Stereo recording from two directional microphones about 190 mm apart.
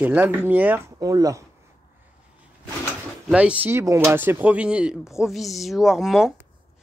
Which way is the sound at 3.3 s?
5° right (ahead or behind).